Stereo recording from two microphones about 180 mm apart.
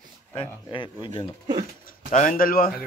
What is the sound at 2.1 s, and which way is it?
Speech, 50° left (ahead or behind).